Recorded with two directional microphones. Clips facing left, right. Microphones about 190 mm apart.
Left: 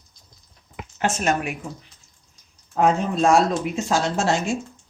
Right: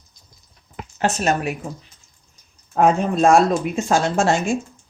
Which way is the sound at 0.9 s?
35° right (ahead or behind).